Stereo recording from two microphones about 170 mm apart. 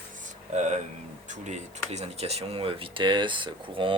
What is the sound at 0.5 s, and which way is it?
Speech, 40° right (ahead or behind).